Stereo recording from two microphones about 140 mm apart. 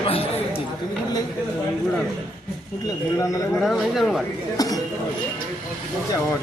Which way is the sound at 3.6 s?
Centre (ahead or behind).